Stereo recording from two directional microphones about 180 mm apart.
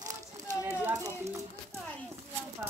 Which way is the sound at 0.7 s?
15° right (ahead or behind).